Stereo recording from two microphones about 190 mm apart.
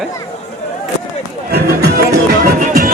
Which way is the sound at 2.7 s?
45° right (ahead or behind).